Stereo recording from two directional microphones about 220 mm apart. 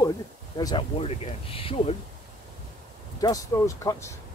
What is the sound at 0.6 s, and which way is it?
Speech, 20° left (ahead or behind).